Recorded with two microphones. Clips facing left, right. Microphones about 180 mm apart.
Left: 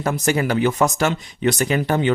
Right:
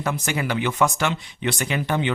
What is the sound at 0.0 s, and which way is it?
Speech, 40° left (ahead or behind).